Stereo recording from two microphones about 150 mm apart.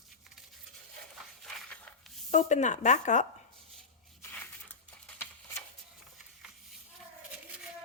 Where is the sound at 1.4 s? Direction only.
Centre (ahead or behind).